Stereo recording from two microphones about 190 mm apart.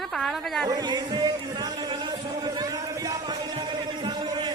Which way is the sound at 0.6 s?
20° right (ahead or behind).